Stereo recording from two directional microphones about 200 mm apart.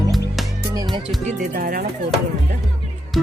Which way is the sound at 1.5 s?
45° right (ahead or behind).